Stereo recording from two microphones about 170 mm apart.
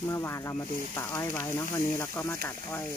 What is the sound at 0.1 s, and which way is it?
Speech, 15° left (ahead or behind).